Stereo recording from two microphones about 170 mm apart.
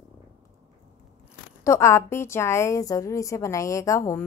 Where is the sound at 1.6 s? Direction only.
15° left (ahead or behind).